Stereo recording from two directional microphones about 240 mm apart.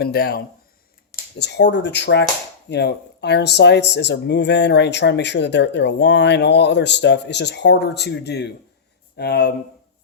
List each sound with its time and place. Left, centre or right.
0.0 s a man's voice: left